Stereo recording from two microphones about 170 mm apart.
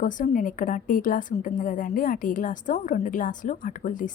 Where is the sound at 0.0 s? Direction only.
50° left (ahead or behind).